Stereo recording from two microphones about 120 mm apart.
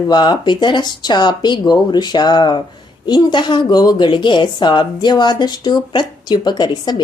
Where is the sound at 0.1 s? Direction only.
40° left (ahead or behind).